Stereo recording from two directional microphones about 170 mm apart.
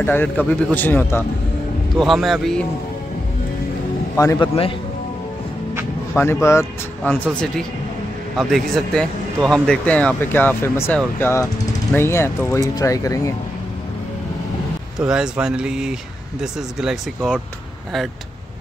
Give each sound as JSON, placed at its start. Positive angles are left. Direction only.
{"t": 0.0, "sound": "speech", "side_deg": 10}
{"t": 2.0, "sound": "speech", "side_deg": 0}
{"t": 4.2, "sound": "a man's voice", "side_deg": 20}
{"t": 6.1, "sound": "speech", "side_deg": 15}
{"t": 7.0, "sound": "speech", "side_deg": 5}
{"t": 15.0, "sound": "speech", "side_deg": -5}